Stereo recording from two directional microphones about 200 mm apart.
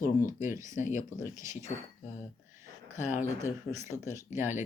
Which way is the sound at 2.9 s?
35° left (ahead or behind).